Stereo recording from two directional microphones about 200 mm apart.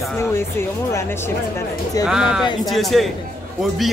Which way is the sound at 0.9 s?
10° left (ahead or behind).